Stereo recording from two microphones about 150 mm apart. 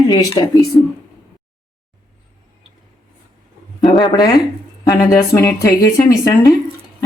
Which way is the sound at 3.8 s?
30° left (ahead or behind).